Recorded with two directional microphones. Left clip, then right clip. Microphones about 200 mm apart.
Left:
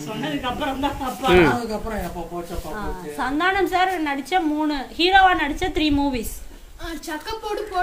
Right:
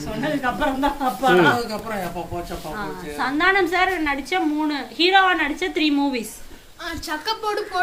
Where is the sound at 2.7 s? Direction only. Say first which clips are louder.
Right 1 dB; 45° left (ahead or behind).